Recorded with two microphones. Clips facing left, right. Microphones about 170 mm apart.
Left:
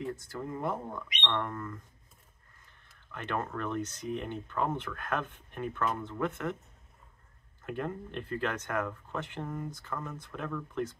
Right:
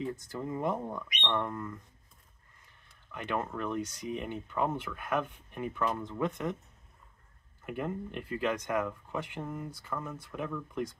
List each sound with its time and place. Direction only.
0.1 s speech: 20° right (ahead or behind)
3.1 s speech: 15° right (ahead or behind)
7.6 s speech: 10° right (ahead or behind)